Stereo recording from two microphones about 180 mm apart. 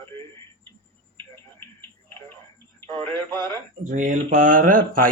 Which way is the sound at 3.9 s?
45° right (ahead or behind).